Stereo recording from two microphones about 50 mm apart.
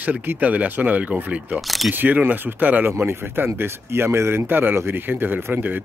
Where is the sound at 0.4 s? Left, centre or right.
Right.